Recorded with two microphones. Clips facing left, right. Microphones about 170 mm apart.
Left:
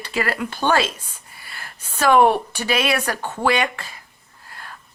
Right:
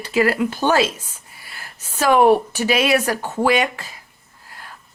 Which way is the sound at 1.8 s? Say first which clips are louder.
Right 1 dB; 10° right (ahead or behind).